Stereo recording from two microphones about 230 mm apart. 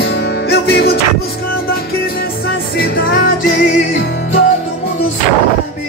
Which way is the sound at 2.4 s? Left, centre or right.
Left.